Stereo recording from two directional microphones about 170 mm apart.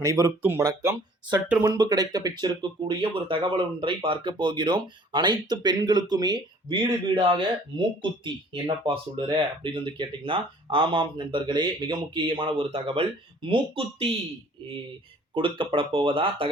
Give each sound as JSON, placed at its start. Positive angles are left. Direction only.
{"t": 0.0, "sound": "speech", "side_deg": -20}
{"t": 15.4, "sound": "speech", "side_deg": -30}